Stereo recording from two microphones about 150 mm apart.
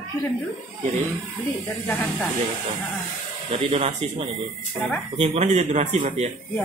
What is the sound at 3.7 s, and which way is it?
Speech, 50° right (ahead or behind).